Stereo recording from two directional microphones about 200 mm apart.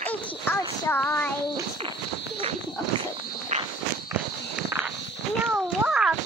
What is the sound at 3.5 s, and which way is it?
Walk, 35° right (ahead or behind).